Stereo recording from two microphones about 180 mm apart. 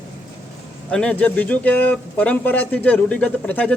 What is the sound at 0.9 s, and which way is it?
A man's voice, 5° left (ahead or behind).